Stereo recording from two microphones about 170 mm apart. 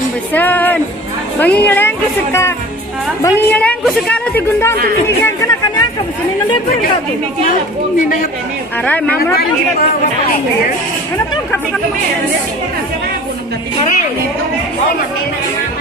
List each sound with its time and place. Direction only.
0.3 s a woman's voice: 10° left (ahead or behind)